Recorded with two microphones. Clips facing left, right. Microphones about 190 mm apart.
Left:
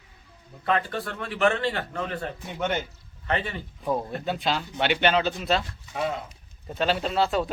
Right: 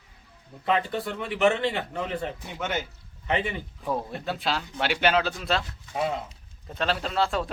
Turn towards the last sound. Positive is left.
turn(degrees=0)  # may be behind; listen again after turning